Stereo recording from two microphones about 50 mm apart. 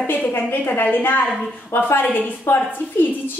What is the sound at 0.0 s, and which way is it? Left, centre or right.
Speech, left.